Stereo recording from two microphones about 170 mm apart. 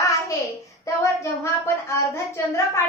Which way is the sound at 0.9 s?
20° left (ahead or behind).